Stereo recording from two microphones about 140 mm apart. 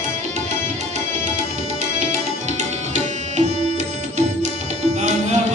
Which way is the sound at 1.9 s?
55° right (ahead or behind).